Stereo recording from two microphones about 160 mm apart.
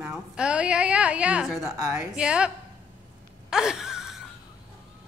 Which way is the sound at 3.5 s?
5° right (ahead or behind).